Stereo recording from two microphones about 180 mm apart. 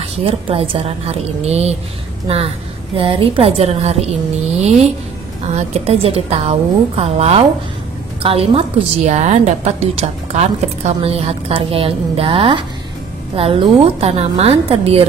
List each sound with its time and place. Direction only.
0.0 s a woman's voice: 30° right (ahead or behind)
5.5 s a woman's voice: 35° right (ahead or behind)